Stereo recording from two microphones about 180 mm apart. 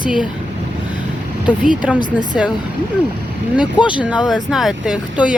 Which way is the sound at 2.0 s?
5° right (ahead or behind).